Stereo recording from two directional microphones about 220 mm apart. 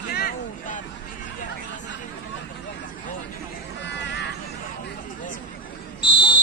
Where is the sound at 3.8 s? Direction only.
50° left (ahead or behind).